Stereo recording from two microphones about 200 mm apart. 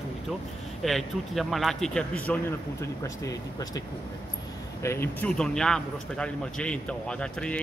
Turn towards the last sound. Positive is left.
turn(degrees=5)  # may be behind; listen again after turning